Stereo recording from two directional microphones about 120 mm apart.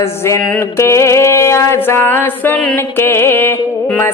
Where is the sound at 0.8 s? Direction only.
25° left (ahead or behind).